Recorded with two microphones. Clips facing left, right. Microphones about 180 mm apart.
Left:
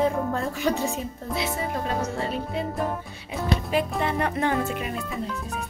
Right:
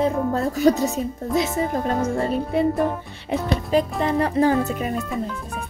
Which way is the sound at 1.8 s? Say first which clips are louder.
Right 5 dB; 50° right (ahead or behind).